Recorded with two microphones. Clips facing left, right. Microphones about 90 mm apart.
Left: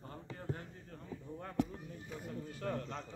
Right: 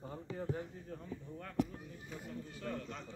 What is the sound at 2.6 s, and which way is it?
Speech, 40° left (ahead or behind).